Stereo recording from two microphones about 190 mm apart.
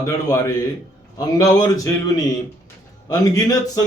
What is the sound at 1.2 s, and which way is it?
A man's voice, 20° left (ahead or behind).